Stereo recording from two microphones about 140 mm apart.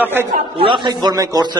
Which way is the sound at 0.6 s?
35° right (ahead or behind).